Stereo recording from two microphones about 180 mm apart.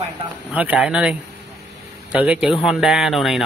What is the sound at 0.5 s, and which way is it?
Speech, 5° right (ahead or behind).